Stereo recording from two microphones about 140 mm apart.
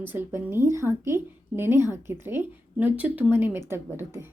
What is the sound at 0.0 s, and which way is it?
Speech, 15° right (ahead or behind).